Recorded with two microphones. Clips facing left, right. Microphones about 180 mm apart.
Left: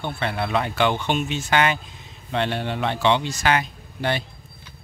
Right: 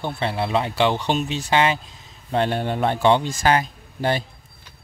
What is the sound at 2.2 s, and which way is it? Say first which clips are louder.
A man's voice: right 3 dB; 40° right (ahead or behind).